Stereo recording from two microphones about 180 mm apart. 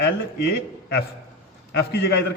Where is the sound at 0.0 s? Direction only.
65° left (ahead or behind).